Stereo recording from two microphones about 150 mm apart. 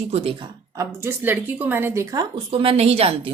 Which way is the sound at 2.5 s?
40° right (ahead or behind).